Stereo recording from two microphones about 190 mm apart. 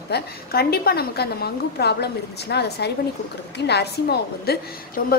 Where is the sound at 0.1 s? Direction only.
55° left (ahead or behind).